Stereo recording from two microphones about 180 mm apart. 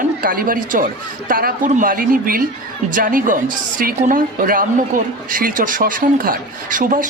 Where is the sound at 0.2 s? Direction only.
50° right (ahead or behind).